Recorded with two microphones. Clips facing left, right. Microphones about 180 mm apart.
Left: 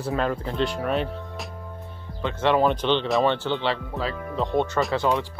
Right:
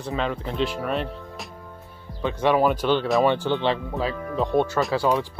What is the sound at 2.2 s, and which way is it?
Speech, 15° right (ahead or behind).